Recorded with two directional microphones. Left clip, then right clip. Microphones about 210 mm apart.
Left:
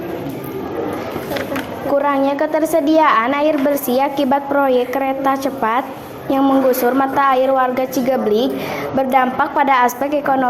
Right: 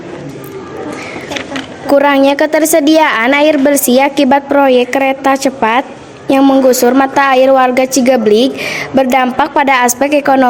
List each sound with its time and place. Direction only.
1.9 s a woman's voice: 50° right (ahead or behind)